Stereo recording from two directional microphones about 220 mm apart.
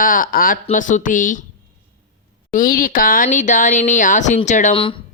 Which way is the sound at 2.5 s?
40° left (ahead or behind).